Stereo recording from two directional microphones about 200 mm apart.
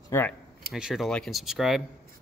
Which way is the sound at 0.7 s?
Centre (ahead or behind).